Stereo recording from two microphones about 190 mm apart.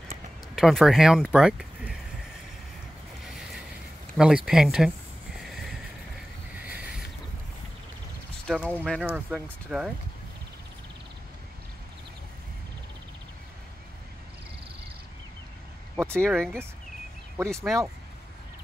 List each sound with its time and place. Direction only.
0.6 s speech: centre (ahead or behind)
4.2 s speech: 10° right (ahead or behind)
5.4 s horse: centre (ahead or behind)
8.5 s speech: centre (ahead or behind)
16.1 s speech: 5° left (ahead or behind)
17.4 s speech: 15° right (ahead or behind)